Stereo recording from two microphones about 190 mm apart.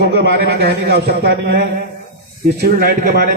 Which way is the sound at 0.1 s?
60° right (ahead or behind).